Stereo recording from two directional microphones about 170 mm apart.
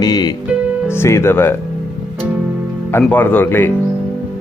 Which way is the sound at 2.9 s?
10° left (ahead or behind).